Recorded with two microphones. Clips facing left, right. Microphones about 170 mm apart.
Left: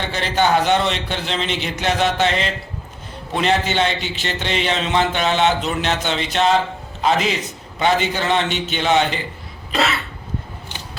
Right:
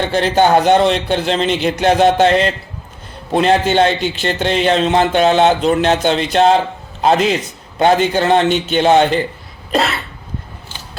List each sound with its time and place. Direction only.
0.1 s a man's voice: 50° right (ahead or behind)